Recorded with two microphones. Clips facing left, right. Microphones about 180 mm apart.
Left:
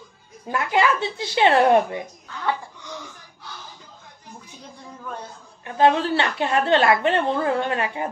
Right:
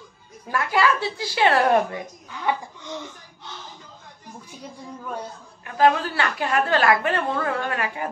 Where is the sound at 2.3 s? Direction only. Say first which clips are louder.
Right 1 dB; 15° right (ahead or behind).